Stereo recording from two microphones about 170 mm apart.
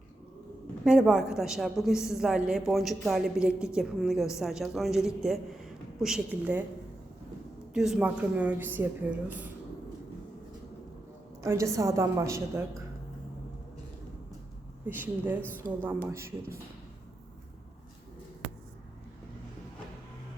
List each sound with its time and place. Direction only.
0.9 s a woman's voice: 5° right (ahead or behind)
7.7 s speech: 5° right (ahead or behind)
11.4 s speech: 15° right (ahead or behind)
14.8 s speech: 10° right (ahead or behind)